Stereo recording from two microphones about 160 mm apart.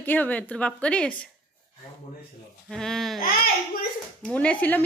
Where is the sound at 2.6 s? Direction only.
5° left (ahead or behind).